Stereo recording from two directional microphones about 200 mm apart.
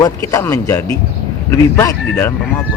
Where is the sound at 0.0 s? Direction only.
15° left (ahead or behind).